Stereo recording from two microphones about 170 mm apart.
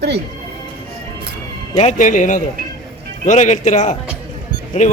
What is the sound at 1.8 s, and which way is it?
A man's voice, 45° left (ahead or behind).